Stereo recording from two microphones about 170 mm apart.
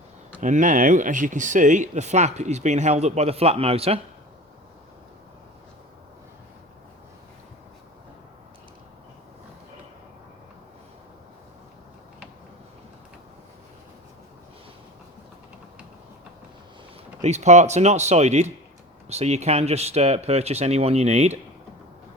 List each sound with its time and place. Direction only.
0.4 s speech: 50° right (ahead or behind)
17.2 s speech: 40° right (ahead or behind)